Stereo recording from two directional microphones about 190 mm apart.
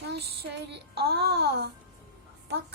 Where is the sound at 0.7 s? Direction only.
60° right (ahead or behind).